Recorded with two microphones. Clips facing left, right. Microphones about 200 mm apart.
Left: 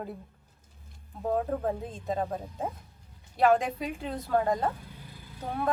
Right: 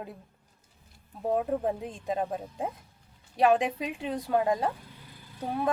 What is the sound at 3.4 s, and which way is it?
A woman's voice, 15° right (ahead or behind).